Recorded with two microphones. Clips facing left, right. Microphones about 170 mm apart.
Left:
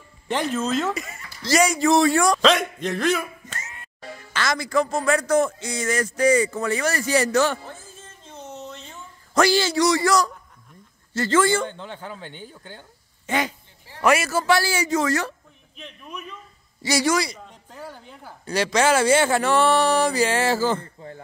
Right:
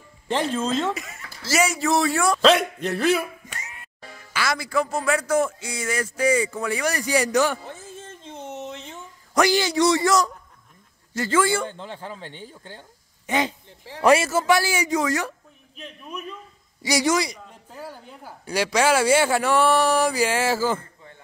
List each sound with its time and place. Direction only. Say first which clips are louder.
0.5 s speech: even; 30° right (ahead or behind)
0.8 s speech: even; centre (ahead or behind)
8.3 s a sound: right 3 dB; 25° right (ahead or behind)
11.1 s a man's voice: left 2 dB; 10° right (ahead or behind)
13.3 s speech: right 1 dB; 15° right (ahead or behind)
14.0 s speech: right 2 dB; 30° right (ahead or behind)
15.7 s a man's voice: right 2 dB; 5° right (ahead or behind)
16.8 s speech: even; 20° right (ahead or behind)
17.6 s speech: right 1 dB; 10° right (ahead or behind)